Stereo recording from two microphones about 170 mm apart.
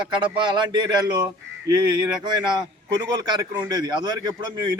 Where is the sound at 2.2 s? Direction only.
25° right (ahead or behind).